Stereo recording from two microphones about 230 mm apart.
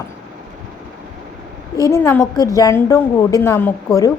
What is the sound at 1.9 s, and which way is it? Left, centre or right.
A woman's voice, centre.